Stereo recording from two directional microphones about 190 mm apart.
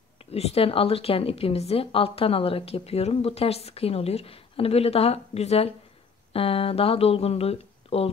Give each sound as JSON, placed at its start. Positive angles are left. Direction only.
{"t": 0.3, "sound": "a woman's voice", "side_deg": 30}